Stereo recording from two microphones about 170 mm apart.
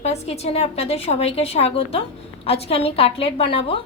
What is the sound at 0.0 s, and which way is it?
A woman's voice, 40° left (ahead or behind).